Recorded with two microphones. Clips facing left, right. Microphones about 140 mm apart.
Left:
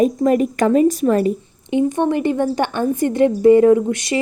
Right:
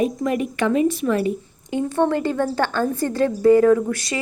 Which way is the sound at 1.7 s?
15° left (ahead or behind).